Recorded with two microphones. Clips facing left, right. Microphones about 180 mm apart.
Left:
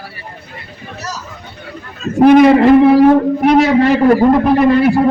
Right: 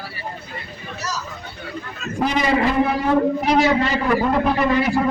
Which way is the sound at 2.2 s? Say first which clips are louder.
Left 13 dB; 55° left (ahead or behind).